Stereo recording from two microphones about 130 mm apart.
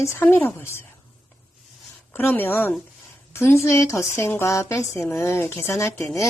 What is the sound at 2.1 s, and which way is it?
A woman's voice, 15° left (ahead or behind).